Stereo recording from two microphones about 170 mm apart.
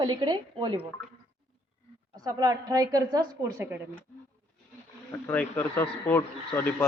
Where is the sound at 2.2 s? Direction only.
20° right (ahead or behind).